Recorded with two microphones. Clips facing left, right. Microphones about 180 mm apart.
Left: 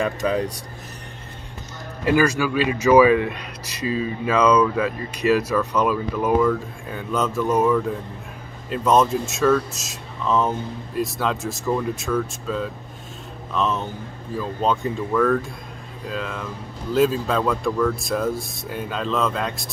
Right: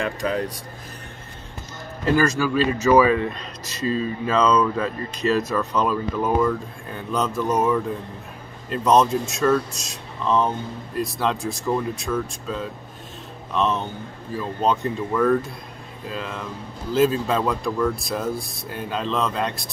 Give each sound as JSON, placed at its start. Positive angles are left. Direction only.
{"t": 2.0, "sound": "speech", "side_deg": 10}